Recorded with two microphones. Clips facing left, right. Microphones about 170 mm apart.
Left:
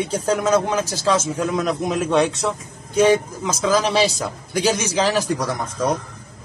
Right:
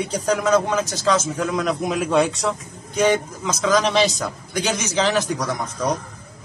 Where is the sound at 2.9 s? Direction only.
30° left (ahead or behind).